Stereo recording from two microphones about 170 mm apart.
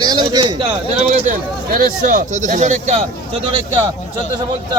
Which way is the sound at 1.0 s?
45° right (ahead or behind).